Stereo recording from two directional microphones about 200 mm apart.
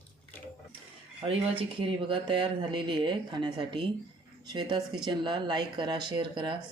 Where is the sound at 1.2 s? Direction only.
25° right (ahead or behind).